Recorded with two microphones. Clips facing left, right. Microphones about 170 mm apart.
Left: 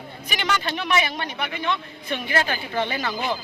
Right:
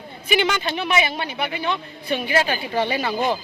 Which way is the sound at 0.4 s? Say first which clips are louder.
Right 2 dB; 5° right (ahead or behind).